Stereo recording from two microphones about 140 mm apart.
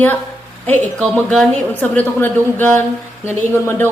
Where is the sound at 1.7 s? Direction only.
15° left (ahead or behind).